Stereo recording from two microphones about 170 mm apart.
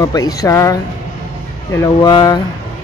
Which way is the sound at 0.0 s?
20° left (ahead or behind).